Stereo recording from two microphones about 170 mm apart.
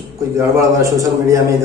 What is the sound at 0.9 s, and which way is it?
Speech, 20° right (ahead or behind).